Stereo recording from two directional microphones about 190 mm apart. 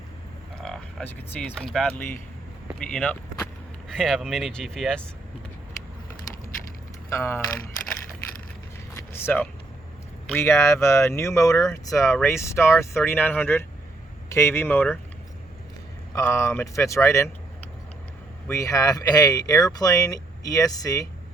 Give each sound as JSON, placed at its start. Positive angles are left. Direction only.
{"t": 0.6, "sound": "speech", "side_deg": 5}
{"t": 7.1, "sound": "speech", "side_deg": 15}
{"t": 9.0, "sound": "a sound", "side_deg": 10}
{"t": 10.2, "sound": "speech", "side_deg": 10}
{"t": 16.1, "sound": "speech", "side_deg": 15}
{"t": 18.4, "sound": "speech", "side_deg": 15}